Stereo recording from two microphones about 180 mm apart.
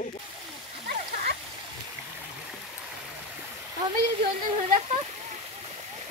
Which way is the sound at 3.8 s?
25° right (ahead or behind).